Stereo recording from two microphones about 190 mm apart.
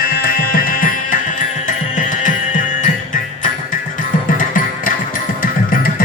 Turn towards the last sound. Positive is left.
turn(degrees=45)  # may be behind; listen again after turning